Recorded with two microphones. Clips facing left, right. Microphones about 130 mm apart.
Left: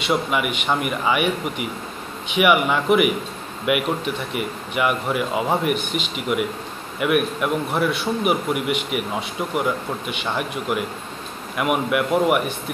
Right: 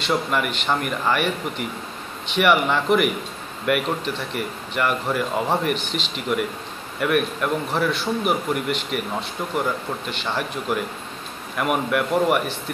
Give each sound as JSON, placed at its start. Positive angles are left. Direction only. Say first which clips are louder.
{"t": 0.0, "sound": "a man's voice", "louder": "left 1 dB", "side_deg": 5}